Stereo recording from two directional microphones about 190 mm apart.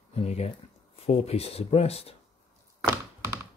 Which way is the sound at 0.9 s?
30° left (ahead or behind).